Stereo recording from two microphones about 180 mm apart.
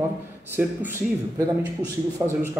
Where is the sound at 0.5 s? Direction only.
10° right (ahead or behind).